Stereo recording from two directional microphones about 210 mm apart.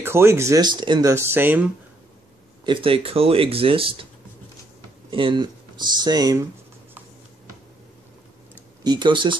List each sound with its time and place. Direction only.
0.0 s speech: 10° right (ahead or behind)
2.6 s speech: 25° right (ahead or behind)
5.1 s speech: 25° right (ahead or behind)
8.8 s speech: 20° right (ahead or behind)